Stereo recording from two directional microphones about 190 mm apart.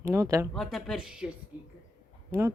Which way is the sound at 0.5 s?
Centre (ahead or behind).